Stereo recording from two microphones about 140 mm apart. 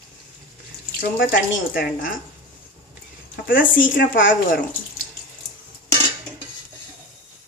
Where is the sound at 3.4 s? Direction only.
75° left (ahead or behind).